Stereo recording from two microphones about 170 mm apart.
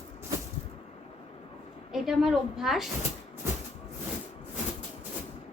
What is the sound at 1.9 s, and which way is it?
Speech, centre (ahead or behind).